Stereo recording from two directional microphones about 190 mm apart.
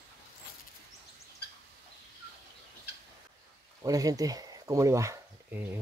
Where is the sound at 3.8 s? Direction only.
20° right (ahead or behind).